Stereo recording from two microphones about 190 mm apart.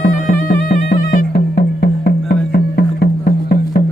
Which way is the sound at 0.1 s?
50° left (ahead or behind).